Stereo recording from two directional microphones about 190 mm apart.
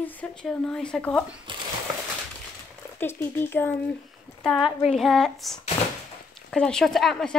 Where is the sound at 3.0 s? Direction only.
10° left (ahead or behind).